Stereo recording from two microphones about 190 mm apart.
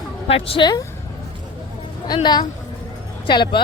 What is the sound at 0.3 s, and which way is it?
Speech, 30° left (ahead or behind).